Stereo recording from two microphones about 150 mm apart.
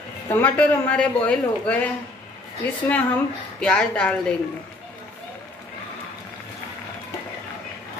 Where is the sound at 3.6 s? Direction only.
5° left (ahead or behind).